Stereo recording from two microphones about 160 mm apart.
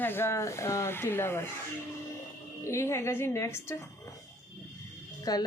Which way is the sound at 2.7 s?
15° left (ahead or behind).